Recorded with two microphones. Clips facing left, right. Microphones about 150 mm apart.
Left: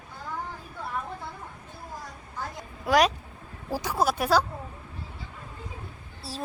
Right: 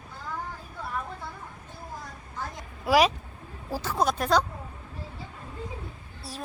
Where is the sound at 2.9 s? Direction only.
Centre (ahead or behind).